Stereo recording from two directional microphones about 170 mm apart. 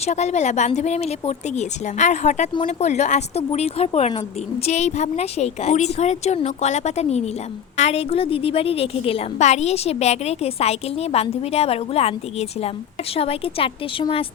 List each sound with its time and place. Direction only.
0.0 s a woman's voice: 40° left (ahead or behind)